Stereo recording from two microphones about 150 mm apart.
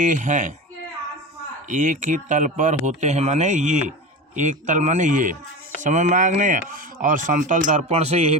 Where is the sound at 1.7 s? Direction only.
55° right (ahead or behind).